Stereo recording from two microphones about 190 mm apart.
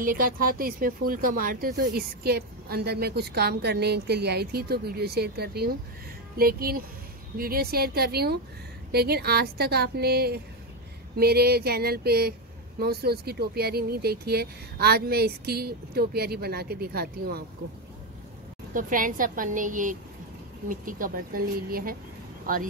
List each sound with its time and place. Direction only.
0.0 s a woman's voice: 50° right (ahead or behind)
18.7 s a woman's voice: 45° right (ahead or behind)